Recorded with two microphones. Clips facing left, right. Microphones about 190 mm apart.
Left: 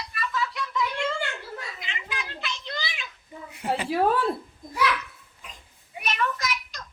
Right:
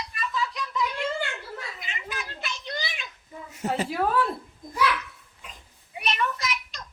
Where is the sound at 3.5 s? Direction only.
40° right (ahead or behind).